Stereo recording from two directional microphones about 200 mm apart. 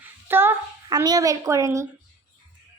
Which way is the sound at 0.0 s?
10° right (ahead or behind).